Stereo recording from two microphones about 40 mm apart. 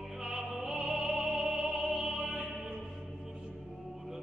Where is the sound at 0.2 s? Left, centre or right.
Centre.